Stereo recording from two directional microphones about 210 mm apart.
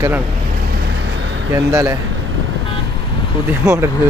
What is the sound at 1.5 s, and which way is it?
Speech, 15° right (ahead or behind).